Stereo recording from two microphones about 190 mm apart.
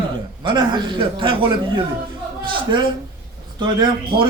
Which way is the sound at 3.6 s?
25° right (ahead or behind).